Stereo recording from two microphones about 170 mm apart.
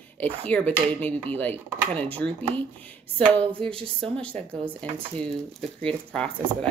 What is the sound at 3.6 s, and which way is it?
Speech, 30° right (ahead or behind).